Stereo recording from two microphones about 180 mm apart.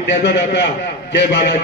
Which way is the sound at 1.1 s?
70° left (ahead or behind).